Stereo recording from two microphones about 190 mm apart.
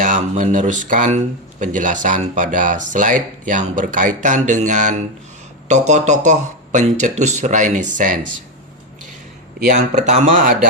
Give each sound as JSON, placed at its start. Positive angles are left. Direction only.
{"t": 0.0, "sound": "speech", "side_deg": -45}
{"t": 9.6, "sound": "speech", "side_deg": -40}